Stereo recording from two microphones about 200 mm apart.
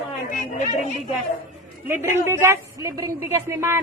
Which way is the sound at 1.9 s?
10° right (ahead or behind).